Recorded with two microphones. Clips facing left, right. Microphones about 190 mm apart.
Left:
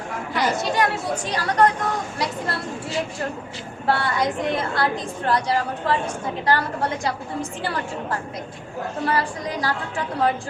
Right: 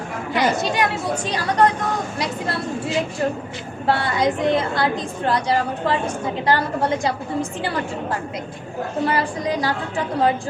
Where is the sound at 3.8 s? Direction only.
20° right (ahead or behind).